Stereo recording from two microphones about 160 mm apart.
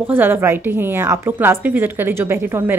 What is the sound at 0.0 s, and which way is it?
A woman's voice, 10° right (ahead or behind).